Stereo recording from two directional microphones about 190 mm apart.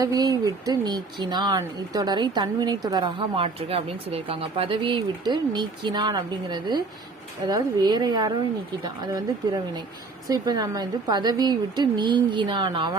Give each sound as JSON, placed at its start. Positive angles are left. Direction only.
{"t": 0.0, "sound": "speech", "side_deg": -20}
{"t": 10.2, "sound": "speech", "side_deg": -20}